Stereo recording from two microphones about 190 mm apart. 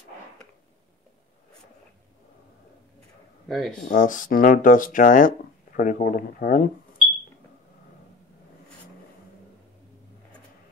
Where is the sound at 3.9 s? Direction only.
45° left (ahead or behind).